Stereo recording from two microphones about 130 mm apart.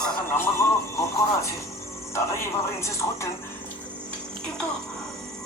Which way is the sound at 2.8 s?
20° left (ahead or behind).